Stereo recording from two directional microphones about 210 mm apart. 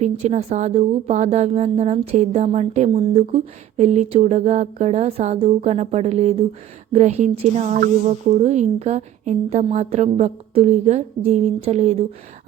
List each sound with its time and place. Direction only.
0.0 s speech: 30° right (ahead or behind)